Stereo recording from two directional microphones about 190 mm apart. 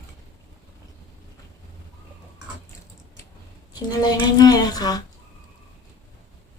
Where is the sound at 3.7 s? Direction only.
20° left (ahead or behind).